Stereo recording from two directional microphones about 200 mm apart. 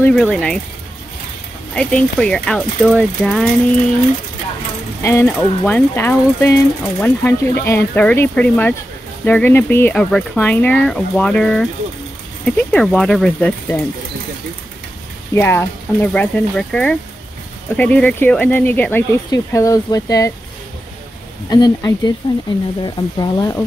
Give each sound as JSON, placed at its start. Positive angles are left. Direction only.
{"t": 0.0, "sound": "speech", "side_deg": 5}
{"t": 1.8, "sound": "speech", "side_deg": 5}
{"t": 5.0, "sound": "speech", "side_deg": 15}
{"t": 15.3, "sound": "speech", "side_deg": 10}
{"t": 21.5, "sound": "speech", "side_deg": 20}